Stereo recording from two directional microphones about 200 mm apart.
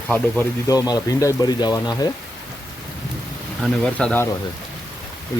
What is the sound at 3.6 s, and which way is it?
Speech, 5° left (ahead or behind).